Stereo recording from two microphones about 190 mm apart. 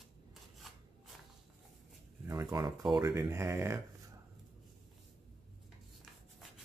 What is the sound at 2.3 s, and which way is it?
Speech, 15° right (ahead or behind).